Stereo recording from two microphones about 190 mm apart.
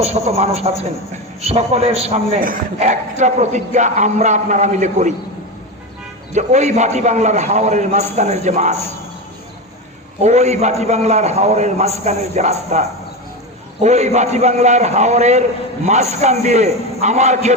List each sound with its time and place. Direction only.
0.0 s a man's voice: 35° right (ahead or behind)
6.3 s a man's voice: 40° right (ahead or behind)
10.2 s a man's voice: 35° right (ahead or behind)
13.8 s a man's voice: 35° right (ahead or behind)